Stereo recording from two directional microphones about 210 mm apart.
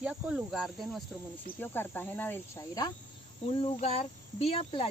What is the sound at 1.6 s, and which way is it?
Speech, 10° left (ahead or behind).